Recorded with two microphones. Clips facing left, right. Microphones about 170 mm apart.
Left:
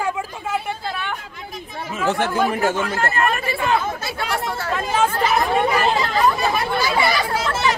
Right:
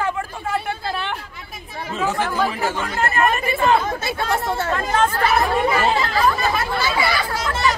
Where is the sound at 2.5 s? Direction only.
50° left (ahead or behind).